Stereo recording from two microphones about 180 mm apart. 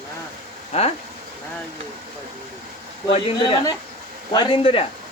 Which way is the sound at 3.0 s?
30° left (ahead or behind).